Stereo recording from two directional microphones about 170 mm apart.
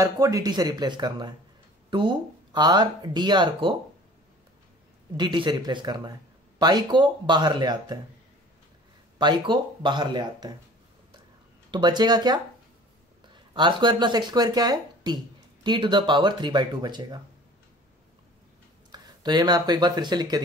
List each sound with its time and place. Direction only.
0.0 s speech: 20° right (ahead or behind)
5.1 s speech: 25° right (ahead or behind)
9.2 s speech: 25° right (ahead or behind)
11.7 s speech: 25° right (ahead or behind)
18.9 s speech: 25° right (ahead or behind)